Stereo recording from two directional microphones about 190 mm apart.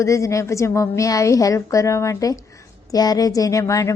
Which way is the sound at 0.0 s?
15° left (ahead or behind).